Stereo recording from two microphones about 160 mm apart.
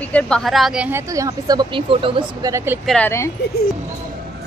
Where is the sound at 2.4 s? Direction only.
20° right (ahead or behind).